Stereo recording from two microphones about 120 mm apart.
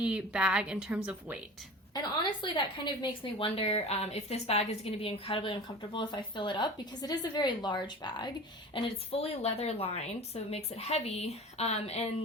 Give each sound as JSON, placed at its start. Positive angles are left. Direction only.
{"t": 0.0, "sound": "a woman's voice", "side_deg": -10}
{"t": 2.4, "sound": "a woman's voice", "side_deg": 40}
{"t": 8.7, "sound": "a woman's voice", "side_deg": 50}